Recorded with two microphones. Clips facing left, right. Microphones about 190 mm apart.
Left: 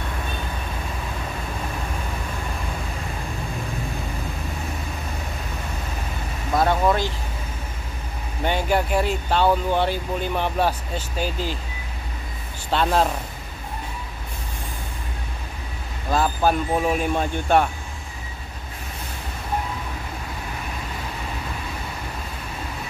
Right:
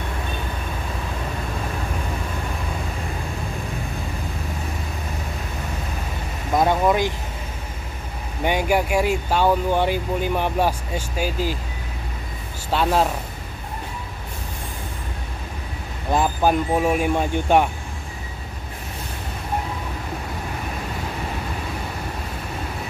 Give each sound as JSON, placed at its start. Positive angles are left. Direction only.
{"t": 6.5, "sound": "vehicle", "side_deg": -15}
{"t": 8.5, "sound": "speech", "side_deg": -10}
{"t": 12.7, "sound": "speech", "side_deg": -5}
{"t": 16.1, "sound": "speech", "side_deg": -15}